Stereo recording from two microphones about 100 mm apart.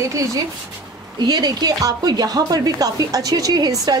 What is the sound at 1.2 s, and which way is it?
Speech, 45° right (ahead or behind).